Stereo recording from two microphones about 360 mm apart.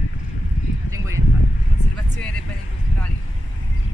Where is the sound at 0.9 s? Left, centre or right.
Centre.